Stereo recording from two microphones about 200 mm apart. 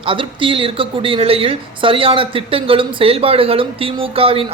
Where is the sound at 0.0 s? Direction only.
25° right (ahead or behind).